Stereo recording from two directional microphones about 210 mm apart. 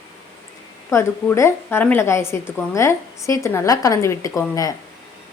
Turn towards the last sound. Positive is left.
turn(degrees=15)  # may be behind; listen again after turning